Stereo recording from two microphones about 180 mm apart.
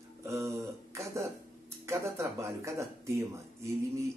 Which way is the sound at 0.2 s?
15° right (ahead or behind).